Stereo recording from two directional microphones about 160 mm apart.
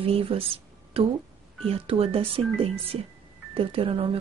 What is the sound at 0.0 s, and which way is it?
Speech, 35° right (ahead or behind).